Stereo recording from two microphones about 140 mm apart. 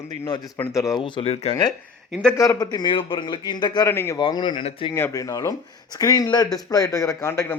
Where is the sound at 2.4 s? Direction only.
25° left (ahead or behind).